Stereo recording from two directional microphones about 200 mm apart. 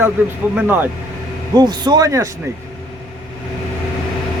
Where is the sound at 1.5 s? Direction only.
20° right (ahead or behind).